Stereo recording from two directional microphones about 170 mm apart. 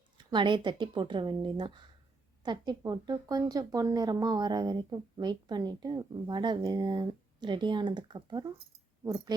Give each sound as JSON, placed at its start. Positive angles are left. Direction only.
{"t": 0.2, "sound": "speech", "side_deg": -25}